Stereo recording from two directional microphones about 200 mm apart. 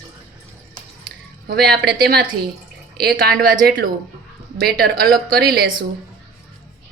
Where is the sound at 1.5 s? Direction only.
50° right (ahead or behind).